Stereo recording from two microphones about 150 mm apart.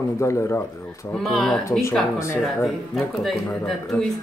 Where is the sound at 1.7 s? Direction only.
20° left (ahead or behind).